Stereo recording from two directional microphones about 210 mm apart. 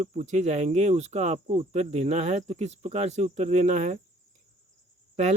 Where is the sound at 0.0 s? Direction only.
30° right (ahead or behind).